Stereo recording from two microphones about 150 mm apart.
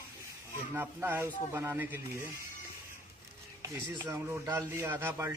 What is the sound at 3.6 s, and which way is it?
Speech, 15° right (ahead or behind).